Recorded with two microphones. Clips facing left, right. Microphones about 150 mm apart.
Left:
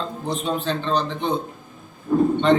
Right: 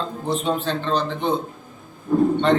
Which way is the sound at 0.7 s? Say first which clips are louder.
Even; 15° left (ahead or behind).